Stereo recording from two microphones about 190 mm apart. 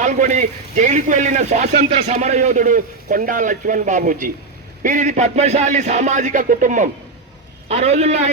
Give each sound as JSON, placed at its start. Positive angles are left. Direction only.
{"t": 0.0, "sound": "speech", "side_deg": -40}